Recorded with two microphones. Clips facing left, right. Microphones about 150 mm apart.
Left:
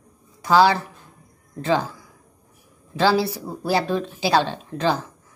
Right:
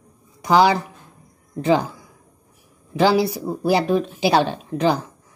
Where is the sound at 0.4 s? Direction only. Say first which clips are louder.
Right 1 dB; 15° right (ahead or behind).